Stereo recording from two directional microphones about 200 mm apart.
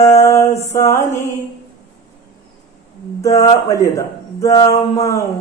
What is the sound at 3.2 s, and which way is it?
Mantra, 15° left (ahead or behind).